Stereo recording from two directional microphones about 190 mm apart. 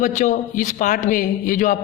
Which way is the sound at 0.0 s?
40° left (ahead or behind).